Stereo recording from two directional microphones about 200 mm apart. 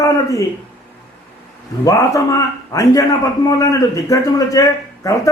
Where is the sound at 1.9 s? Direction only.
15° left (ahead or behind).